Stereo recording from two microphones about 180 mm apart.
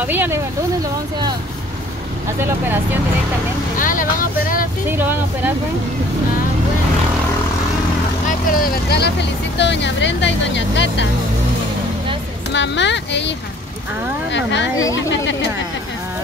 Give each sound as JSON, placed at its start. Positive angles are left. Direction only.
{"t": 0.0, "sound": "speech", "side_deg": -10}
{"t": 2.4, "sound": "speech", "side_deg": -10}
{"t": 3.7, "sound": "speech", "side_deg": 50}
{"t": 4.8, "sound": "speech", "side_deg": -10}
{"t": 8.3, "sound": "speech", "side_deg": 50}
{"t": 9.6, "sound": "speech", "side_deg": 75}
{"t": 12.5, "sound": "speech", "side_deg": 80}
{"t": 14.3, "sound": "speech", "side_deg": 90}